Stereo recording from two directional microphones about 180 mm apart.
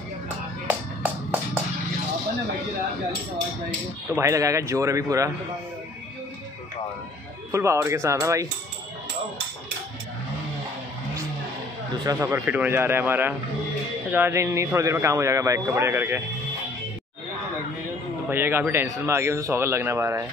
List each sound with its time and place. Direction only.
0.7 s music: 10° right (ahead or behind)
4.1 s a man's voice: 15° right (ahead or behind)
7.5 s a man's voice: 15° right (ahead or behind)
12.0 s a man's voice: 20° right (ahead or behind)
18.3 s a man's voice: 10° right (ahead or behind)